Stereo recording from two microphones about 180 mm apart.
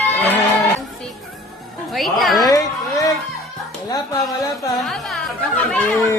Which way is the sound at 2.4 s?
20° left (ahead or behind).